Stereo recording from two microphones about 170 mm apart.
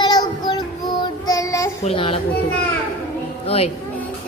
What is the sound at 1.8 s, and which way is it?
Speech, 30° left (ahead or behind).